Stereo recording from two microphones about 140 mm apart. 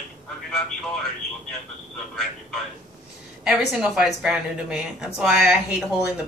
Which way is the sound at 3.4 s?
5° right (ahead or behind).